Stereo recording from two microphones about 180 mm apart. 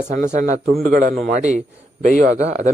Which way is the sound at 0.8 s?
55° right (ahead or behind).